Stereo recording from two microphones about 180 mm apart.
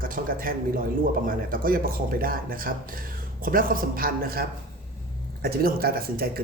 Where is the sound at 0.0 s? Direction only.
55° right (ahead or behind).